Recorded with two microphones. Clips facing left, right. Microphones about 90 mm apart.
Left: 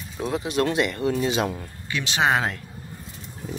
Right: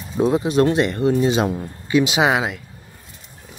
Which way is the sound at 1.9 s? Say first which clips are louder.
Right 6 dB; 15° right (ahead or behind).